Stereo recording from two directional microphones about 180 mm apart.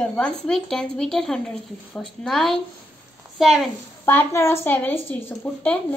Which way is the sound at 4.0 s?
10° left (ahead or behind).